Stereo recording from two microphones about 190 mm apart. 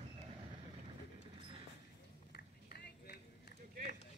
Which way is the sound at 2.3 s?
55° left (ahead or behind).